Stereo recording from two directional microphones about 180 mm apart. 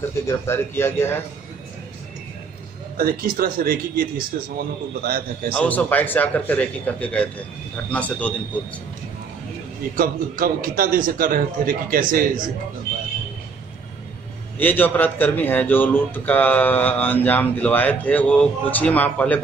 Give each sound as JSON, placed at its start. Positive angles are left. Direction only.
{"t": 0.3, "sound": "a man's voice", "side_deg": 15}
{"t": 3.0, "sound": "speech", "side_deg": -55}
{"t": 5.5, "sound": "a man's voice", "side_deg": 10}
{"t": 9.9, "sound": "a man's voice", "side_deg": -55}
{"t": 14.6, "sound": "a man's voice", "side_deg": 10}